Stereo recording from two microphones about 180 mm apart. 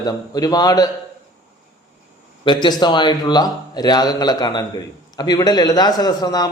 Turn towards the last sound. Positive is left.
turn(degrees=20)  # may be behind; listen again after turning